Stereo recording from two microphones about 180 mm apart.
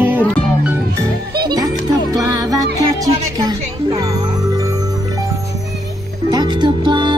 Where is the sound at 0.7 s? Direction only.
20° right (ahead or behind).